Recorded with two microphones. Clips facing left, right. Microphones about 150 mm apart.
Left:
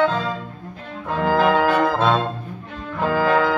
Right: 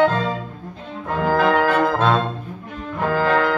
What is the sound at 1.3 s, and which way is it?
Music, 10° left (ahead or behind).